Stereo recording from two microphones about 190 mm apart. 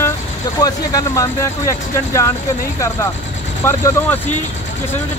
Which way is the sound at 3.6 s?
15° left (ahead or behind).